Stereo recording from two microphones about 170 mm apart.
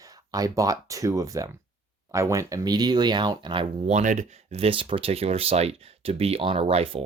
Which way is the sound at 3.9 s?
45° right (ahead or behind).